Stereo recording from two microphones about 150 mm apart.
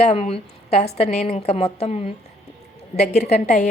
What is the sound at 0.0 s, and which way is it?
A woman's voice, 45° left (ahead or behind).